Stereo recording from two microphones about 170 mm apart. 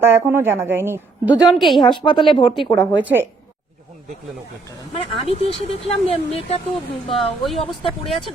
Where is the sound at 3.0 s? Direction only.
10° right (ahead or behind).